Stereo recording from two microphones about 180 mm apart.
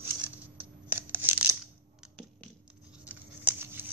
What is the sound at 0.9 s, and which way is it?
Tearing, 10° right (ahead or behind).